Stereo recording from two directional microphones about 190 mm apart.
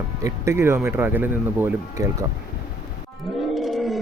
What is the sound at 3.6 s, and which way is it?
Wild animals, centre (ahead or behind).